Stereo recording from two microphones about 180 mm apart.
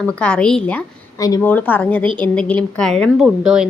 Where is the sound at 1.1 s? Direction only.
20° left (ahead or behind).